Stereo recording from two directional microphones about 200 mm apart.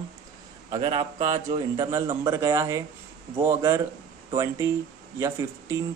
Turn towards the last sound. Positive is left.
turn(degrees=-15)  # may be behind; listen again after turning